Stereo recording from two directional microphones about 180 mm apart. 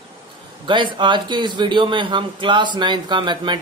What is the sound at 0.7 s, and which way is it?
A man's voice, 25° right (ahead or behind).